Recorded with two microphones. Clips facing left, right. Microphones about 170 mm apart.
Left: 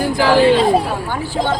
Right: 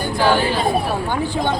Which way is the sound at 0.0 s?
90° left.